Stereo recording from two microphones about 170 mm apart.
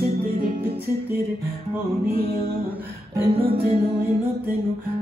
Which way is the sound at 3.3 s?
35° right (ahead or behind).